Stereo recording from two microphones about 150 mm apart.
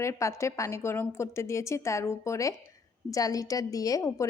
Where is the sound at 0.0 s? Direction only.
20° left (ahead or behind).